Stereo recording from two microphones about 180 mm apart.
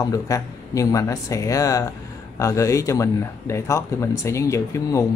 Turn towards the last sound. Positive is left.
turn(degrees=15)  # may be behind; listen again after turning